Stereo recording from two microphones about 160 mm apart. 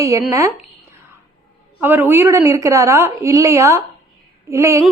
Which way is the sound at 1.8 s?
15° right (ahead or behind).